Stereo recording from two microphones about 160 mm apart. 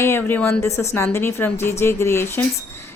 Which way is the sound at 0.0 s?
15° left (ahead or behind).